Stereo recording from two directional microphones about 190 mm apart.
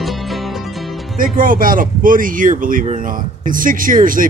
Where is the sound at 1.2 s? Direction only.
45° right (ahead or behind).